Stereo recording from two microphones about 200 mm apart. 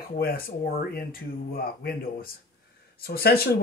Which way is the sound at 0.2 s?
50° left (ahead or behind).